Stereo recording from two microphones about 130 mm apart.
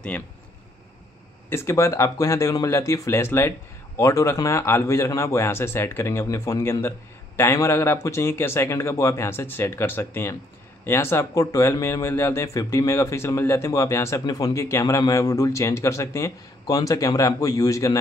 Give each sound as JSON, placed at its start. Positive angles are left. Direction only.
{"t": 1.5, "sound": "speech", "side_deg": 20}